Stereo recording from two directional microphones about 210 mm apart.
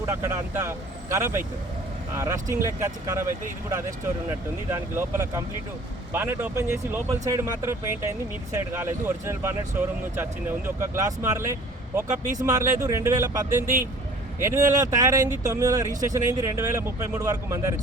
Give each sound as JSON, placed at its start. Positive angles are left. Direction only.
{"t": 0.0, "sound": "speech", "side_deg": -15}
{"t": 12.0, "sound": "speech", "side_deg": -35}
{"t": 12.4, "sound": "speech", "side_deg": -15}